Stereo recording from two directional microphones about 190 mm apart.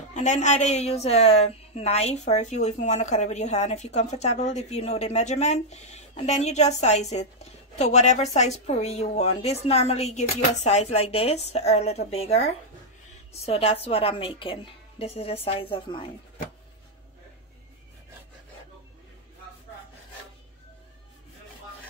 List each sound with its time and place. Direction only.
0.1 s a woman's voice: 40° left (ahead or behind)